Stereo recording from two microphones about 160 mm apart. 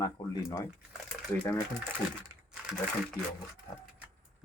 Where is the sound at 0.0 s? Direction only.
20° left (ahead or behind).